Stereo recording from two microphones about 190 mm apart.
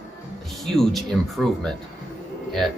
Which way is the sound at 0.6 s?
Centre (ahead or behind).